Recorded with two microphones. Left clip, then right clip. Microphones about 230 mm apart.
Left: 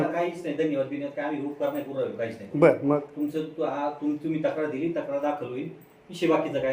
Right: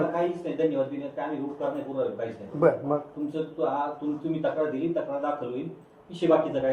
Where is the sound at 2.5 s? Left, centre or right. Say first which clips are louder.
Left 3 dB; left.